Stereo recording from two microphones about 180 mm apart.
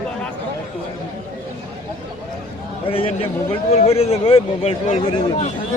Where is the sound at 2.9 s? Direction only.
30° left (ahead or behind).